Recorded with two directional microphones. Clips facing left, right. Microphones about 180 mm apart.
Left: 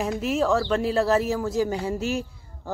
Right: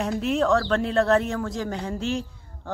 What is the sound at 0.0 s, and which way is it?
Speech, centre (ahead or behind).